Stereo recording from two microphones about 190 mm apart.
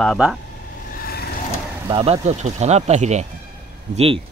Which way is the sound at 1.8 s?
30° right (ahead or behind).